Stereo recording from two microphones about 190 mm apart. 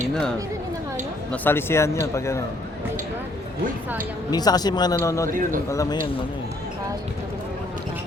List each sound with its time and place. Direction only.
0.1 s speech: 5° left (ahead or behind)
4.3 s speech: 20° left (ahead or behind)